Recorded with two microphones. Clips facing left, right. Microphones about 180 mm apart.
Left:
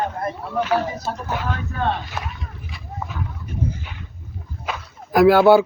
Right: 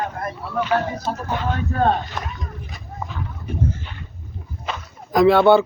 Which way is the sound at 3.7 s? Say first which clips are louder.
Right 2 dB; 10° left (ahead or behind).